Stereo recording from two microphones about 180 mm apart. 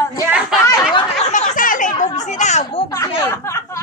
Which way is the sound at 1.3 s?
45° left (ahead or behind).